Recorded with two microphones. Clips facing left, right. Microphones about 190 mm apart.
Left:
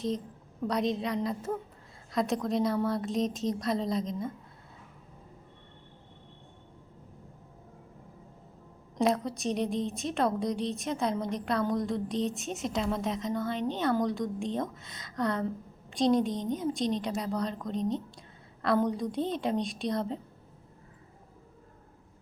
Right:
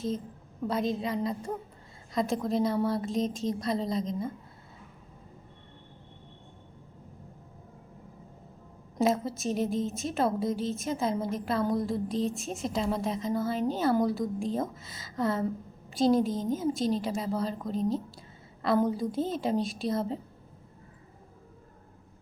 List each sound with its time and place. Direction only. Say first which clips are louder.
0.7 s a woman's voice: even; centre (ahead or behind)
9.2 s a woman's voice: right 1 dB; centre (ahead or behind)